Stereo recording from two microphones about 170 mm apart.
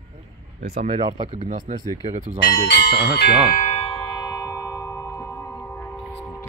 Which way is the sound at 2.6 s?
85° left.